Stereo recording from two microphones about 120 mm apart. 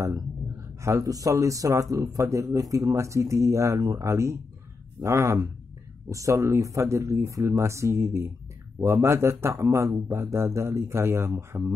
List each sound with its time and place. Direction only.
0.0 s speech: 25° right (ahead or behind)